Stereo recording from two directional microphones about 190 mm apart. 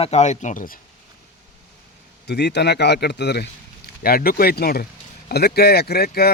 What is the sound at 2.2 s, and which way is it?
Speech, 60° left (ahead or behind).